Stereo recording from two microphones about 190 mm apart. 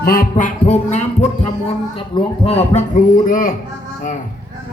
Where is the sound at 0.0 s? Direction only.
50° left (ahead or behind).